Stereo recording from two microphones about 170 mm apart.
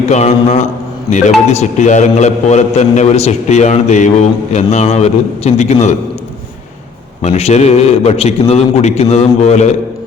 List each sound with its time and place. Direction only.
0.1 s a man's voice: 45° left (ahead or behind)
7.2 s a man's voice: 40° left (ahead or behind)